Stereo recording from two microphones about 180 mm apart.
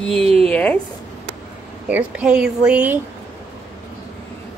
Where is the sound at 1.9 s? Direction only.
5° right (ahead or behind).